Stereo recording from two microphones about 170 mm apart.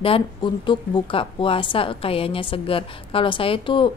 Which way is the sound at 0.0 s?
30° left (ahead or behind).